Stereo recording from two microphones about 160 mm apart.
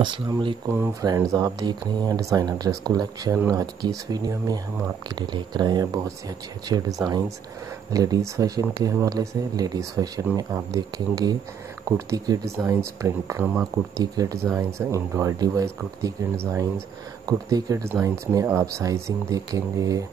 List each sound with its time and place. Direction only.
0.0 s speech: 30° right (ahead or behind)
0.7 s speech: 20° right (ahead or behind)